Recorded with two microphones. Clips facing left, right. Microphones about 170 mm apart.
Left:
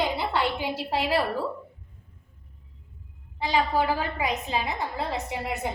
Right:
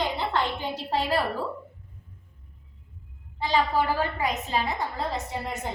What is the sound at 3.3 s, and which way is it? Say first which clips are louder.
A woman's voice: even; 15° left (ahead or behind).